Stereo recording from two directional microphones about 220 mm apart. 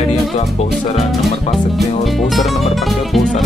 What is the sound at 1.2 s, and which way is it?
Music, centre (ahead or behind).